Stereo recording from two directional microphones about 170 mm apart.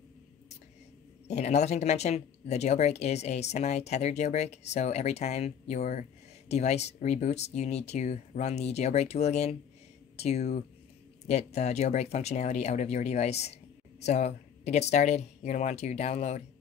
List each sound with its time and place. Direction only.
1.2 s speech: 40° left (ahead or behind)